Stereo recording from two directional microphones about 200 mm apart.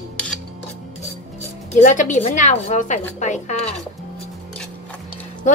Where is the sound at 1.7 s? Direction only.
40° left (ahead or behind).